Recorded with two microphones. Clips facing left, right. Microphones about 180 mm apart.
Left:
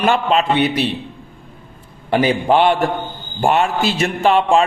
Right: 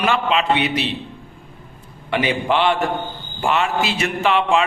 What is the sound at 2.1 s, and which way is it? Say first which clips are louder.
A man's voice: left 5 dB; 40° left (ahead or behind).